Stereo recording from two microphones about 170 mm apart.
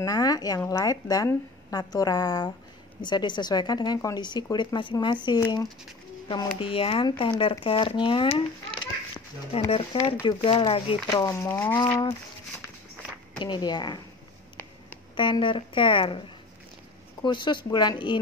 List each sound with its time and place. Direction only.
0.0 s a woman's voice: 20° left (ahead or behind)
13.4 s a woman's voice: 25° left (ahead or behind)
15.1 s a woman's voice: 30° left (ahead or behind)
17.2 s a woman's voice: 25° left (ahead or behind)